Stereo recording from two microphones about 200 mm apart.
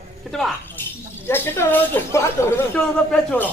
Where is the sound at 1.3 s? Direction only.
10° left (ahead or behind).